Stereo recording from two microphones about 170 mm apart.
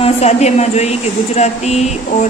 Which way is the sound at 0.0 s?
40° left (ahead or behind).